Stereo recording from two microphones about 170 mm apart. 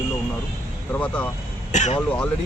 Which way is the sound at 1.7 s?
45° left (ahead or behind).